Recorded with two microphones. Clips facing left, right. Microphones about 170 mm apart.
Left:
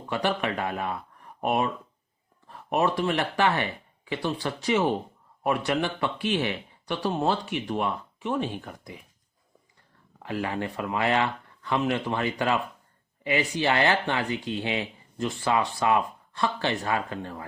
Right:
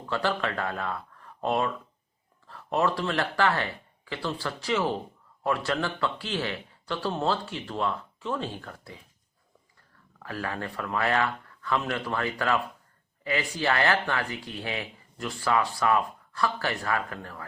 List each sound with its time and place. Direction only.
0.1 s speech: 15° left (ahead or behind)
10.2 s speech: 20° left (ahead or behind)